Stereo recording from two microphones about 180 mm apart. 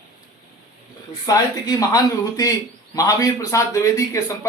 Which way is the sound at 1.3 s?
20° left (ahead or behind).